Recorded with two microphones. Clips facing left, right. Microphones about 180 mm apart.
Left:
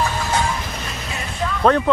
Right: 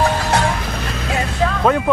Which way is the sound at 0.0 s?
70° right (ahead or behind).